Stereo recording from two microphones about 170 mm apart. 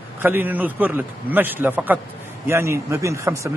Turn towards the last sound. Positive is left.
turn(degrees=-15)  # may be behind; listen again after turning